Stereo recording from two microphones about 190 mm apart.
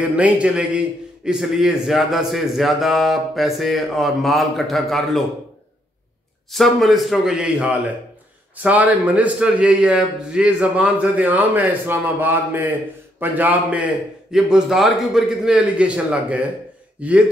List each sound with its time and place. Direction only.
0.0 s a man's voice: 5° right (ahead or behind)
6.5 s a man's voice: centre (ahead or behind)